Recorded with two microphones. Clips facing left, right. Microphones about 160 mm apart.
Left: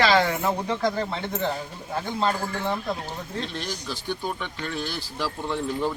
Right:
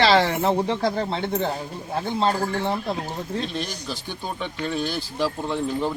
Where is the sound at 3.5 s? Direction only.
15° right (ahead or behind).